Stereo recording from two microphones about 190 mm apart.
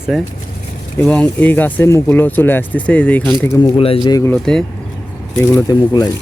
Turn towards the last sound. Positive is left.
turn(degrees=20)  # may be behind; listen again after turning